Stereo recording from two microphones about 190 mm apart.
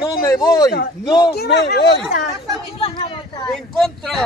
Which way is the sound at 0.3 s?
20° left (ahead or behind).